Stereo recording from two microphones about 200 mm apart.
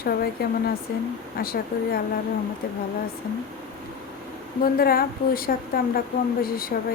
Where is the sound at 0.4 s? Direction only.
50° left (ahead or behind).